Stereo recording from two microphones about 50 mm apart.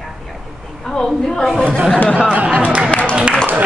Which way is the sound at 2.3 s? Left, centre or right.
Right.